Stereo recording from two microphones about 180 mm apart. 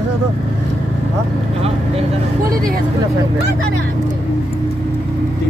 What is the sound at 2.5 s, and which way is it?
Speech, 55° right (ahead or behind).